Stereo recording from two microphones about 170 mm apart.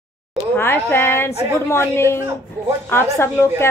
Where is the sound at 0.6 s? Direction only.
10° left (ahead or behind).